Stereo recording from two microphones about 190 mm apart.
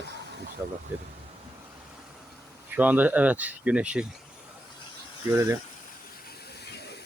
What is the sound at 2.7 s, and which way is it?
Speech, 10° right (ahead or behind).